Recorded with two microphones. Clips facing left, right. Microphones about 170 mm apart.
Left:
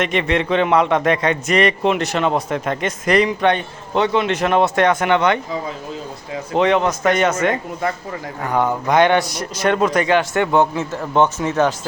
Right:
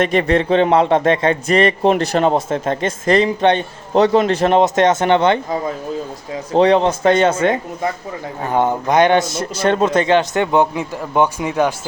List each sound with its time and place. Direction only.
0.0 s a man's voice: 35° right (ahead or behind)
3.9 s a man's voice: 40° right (ahead or behind)
6.5 s a man's voice: 35° right (ahead or behind); by 11.7 s 15° right (ahead or behind)